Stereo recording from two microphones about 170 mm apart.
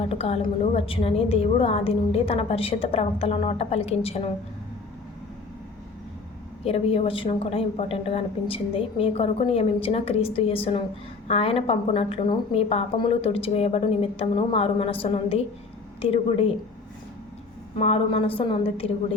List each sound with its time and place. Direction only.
0.0 s a woman's voice: 35° left (ahead or behind)
6.7 s a woman's voice: 35° left (ahead or behind)
17.7 s a woman's voice: 40° left (ahead or behind)